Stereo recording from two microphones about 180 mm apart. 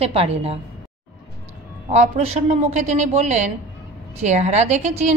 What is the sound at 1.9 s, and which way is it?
A woman's voice, 40° right (ahead or behind).